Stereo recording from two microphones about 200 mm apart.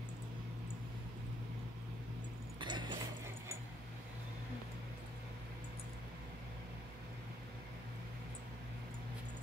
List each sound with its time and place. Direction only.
2.6 s mechanisms: 20° right (ahead or behind)